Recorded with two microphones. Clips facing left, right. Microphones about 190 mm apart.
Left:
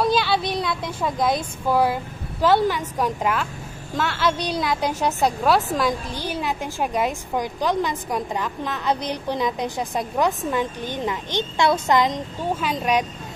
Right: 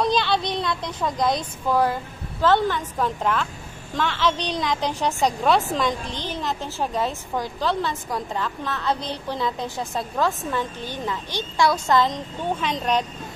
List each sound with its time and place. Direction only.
0.0 s a woman's voice: 5° left (ahead or behind)